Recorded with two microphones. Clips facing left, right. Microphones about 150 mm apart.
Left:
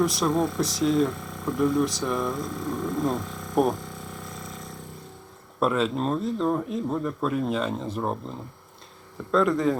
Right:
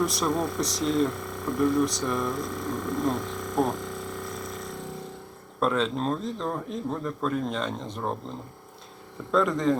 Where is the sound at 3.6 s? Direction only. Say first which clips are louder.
Left 3 dB; 15° left (ahead or behind).